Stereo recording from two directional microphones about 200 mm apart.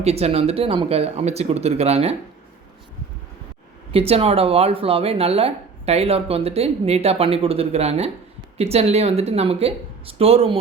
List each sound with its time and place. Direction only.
0.0 s speech: 30° right (ahead or behind)
3.9 s speech: 30° right (ahead or behind)